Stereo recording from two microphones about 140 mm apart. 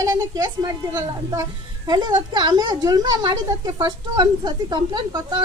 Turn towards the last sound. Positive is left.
turn(degrees=-30)  # may be behind; listen again after turning